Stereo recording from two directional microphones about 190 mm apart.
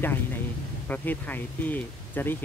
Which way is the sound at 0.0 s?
10° left (ahead or behind).